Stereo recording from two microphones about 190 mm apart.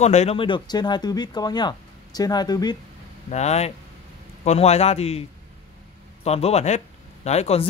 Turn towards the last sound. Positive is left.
turn(degrees=35)  # may be behind; listen again after turning